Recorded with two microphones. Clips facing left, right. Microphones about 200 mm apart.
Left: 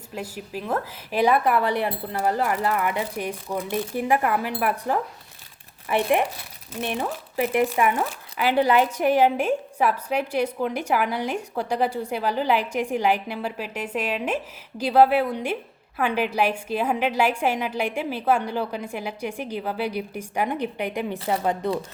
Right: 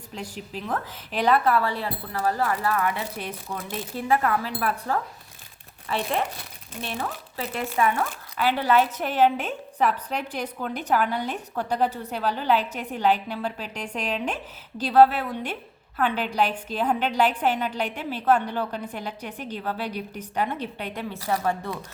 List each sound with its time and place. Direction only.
0.1 s speech: 10° left (ahead or behind)